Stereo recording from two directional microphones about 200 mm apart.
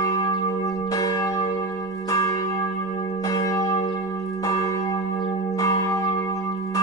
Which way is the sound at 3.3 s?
15° left (ahead or behind).